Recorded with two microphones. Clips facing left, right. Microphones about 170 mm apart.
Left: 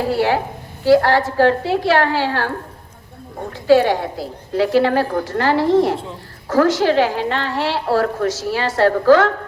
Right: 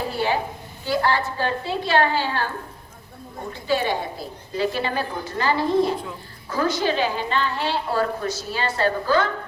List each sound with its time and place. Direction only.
0.0 s a sound: 75° left (ahead or behind)
0.9 s a woman's voice: 75° left (ahead or behind)
3.7 s a woman's voice: 75° left (ahead or behind)